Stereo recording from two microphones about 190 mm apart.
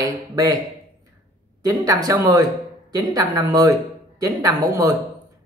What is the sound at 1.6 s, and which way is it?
Speech, 15° right (ahead or behind).